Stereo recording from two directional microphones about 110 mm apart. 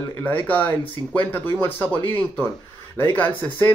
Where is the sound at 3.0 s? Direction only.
20° left (ahead or behind).